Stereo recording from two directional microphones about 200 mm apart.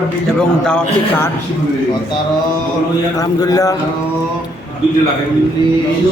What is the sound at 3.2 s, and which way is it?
Speech, 20° left (ahead or behind).